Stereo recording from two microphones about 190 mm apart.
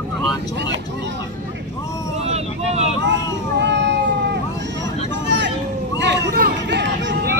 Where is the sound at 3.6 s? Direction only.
65° right (ahead or behind).